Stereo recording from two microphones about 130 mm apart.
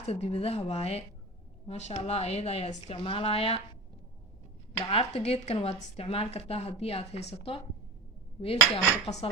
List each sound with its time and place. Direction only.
0.1 s speech: 50° left (ahead or behind)
4.9 s speech: 50° left (ahead or behind)